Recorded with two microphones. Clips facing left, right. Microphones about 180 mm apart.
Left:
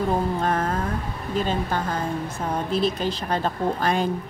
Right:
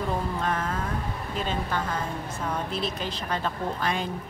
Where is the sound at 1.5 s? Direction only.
35° left (ahead or behind).